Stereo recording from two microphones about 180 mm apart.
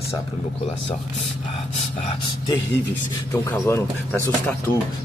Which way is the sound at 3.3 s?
10° left (ahead or behind).